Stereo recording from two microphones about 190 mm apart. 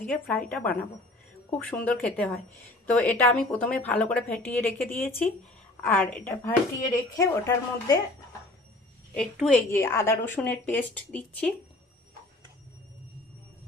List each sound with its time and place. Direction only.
0.0 s speech: 5° left (ahead or behind)
9.1 s a woman's voice: 5° left (ahead or behind)
9.7 s speech: 15° left (ahead or behind)